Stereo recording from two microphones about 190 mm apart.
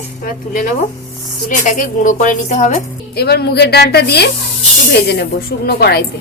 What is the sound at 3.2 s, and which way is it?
A woman's voice, 60° left (ahead or behind).